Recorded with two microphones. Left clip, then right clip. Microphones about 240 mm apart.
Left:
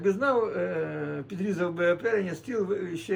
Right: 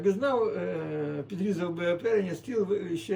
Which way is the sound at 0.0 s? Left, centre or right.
Centre.